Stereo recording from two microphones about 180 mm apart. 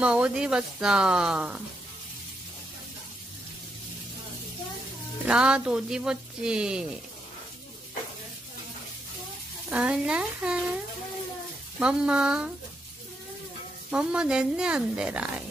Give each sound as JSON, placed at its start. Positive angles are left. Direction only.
{"t": 0.0, "sound": "speech", "side_deg": -5}
{"t": 5.2, "sound": "speech", "side_deg": -5}
{"t": 9.7, "sound": "speech", "side_deg": -5}
{"t": 11.8, "sound": "speech", "side_deg": -5}
{"t": 13.8, "sound": "speech", "side_deg": -5}